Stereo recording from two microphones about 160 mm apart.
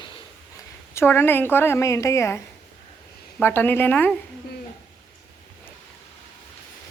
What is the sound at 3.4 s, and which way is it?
Speech, 15° left (ahead or behind).